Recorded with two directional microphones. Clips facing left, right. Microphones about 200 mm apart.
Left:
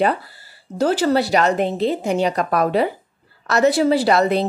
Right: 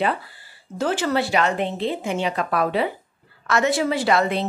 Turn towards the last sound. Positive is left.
turn(degrees=40)  # may be behind; listen again after turning